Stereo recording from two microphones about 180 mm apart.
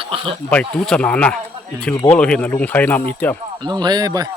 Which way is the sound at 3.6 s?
25° right (ahead or behind).